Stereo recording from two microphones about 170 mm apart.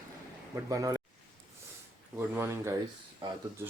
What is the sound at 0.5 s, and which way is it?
Speech, 20° right (ahead or behind).